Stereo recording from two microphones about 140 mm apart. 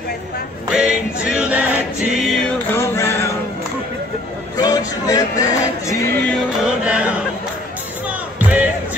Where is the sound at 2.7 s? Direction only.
20° left (ahead or behind).